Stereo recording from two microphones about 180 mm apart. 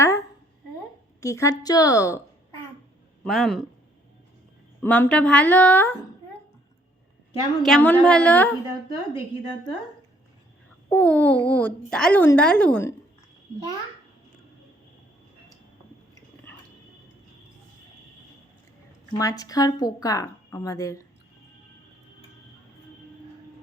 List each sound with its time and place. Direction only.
0.0 s a sound: 15° left (ahead or behind)
1.2 s speech: 15° left (ahead or behind)
3.2 s speech: centre (ahead or behind)
4.8 s speech: 10° left (ahead or behind)
7.6 s speech: 5° left (ahead or behind)
10.8 s speech: 10° left (ahead or behind)
19.1 s speech: 20° left (ahead or behind)